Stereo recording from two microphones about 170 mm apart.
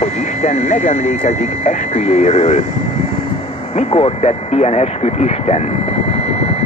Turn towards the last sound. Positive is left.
turn(degrees=40)  # may be behind; listen again after turning